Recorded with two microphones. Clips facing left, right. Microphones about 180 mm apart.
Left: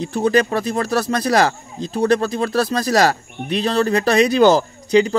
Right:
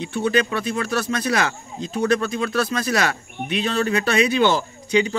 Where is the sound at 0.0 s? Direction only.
40° left (ahead or behind).